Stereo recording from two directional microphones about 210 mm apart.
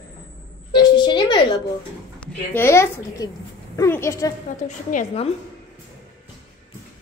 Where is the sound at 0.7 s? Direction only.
20° left (ahead or behind).